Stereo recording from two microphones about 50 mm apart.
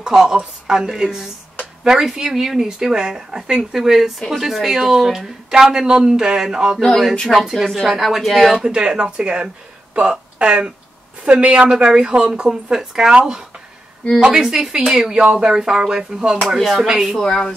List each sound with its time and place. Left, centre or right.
0.0 s speech: centre
8.6 s speech: centre
16.4 s speech: centre
17.1 s a woman's voice: centre